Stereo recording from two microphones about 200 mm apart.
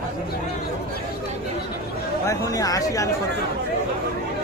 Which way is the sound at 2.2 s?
15° left (ahead or behind).